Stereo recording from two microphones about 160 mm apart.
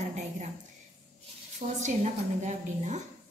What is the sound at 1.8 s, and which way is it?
A woman's voice, 45° right (ahead or behind).